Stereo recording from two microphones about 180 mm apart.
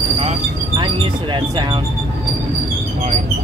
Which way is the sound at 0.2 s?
30° right (ahead or behind).